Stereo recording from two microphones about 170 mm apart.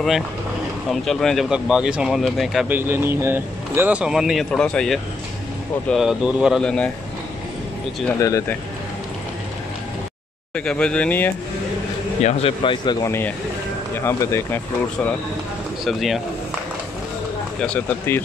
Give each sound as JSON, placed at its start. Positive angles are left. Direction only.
{"t": 0.8, "sound": "speech", "side_deg": 0}
{"t": 2.7, "sound": "speech", "side_deg": -15}
{"t": 8.2, "sound": "speech", "side_deg": 20}
{"t": 10.5, "sound": "speech", "side_deg": 5}
{"t": 12.2, "sound": "speech", "side_deg": 40}
{"t": 13.0, "sound": "speech", "side_deg": 15}
{"t": 15.8, "sound": "speech", "side_deg": 0}
{"t": 17.6, "sound": "speech", "side_deg": 10}